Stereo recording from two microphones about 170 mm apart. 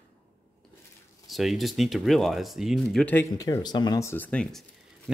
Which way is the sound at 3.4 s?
20° left (ahead or behind).